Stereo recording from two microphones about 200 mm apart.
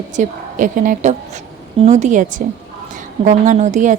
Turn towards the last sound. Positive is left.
turn(degrees=-40)  # may be behind; listen again after turning